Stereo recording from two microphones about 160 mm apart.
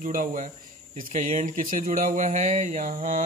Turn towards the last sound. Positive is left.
turn(degrees=-55)  # may be behind; listen again after turning